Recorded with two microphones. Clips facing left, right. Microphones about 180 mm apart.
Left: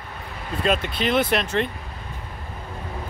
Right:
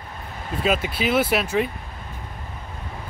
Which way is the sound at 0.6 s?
5° right (ahead or behind).